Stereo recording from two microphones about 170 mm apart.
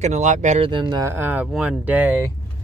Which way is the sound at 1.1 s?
10° right (ahead or behind).